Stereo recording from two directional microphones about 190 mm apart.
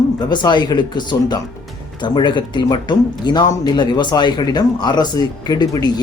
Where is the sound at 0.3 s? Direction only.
20° left (ahead or behind).